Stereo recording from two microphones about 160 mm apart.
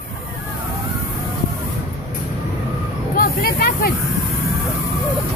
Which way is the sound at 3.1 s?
70° left (ahead or behind).